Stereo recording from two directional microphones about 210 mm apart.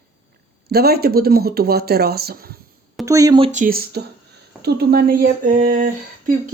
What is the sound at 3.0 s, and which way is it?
Speech, 15° right (ahead or behind).